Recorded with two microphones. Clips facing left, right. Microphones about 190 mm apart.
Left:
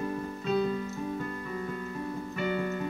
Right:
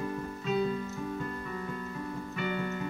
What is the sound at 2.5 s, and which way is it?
Keyboard, 40° left (ahead or behind).